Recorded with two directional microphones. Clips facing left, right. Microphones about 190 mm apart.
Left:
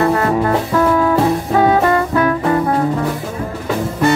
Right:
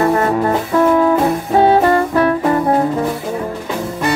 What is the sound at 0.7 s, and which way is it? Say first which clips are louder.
Music: right 3 dB; 25° right (ahead or behind).